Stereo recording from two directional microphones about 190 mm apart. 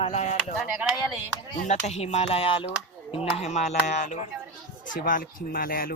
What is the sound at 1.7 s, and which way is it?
Speech, 35° left (ahead or behind).